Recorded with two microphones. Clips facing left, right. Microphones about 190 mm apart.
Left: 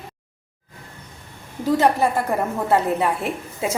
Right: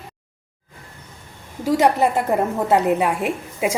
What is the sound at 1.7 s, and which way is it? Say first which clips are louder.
A woman's voice: right 1 dB; 15° right (ahead or behind).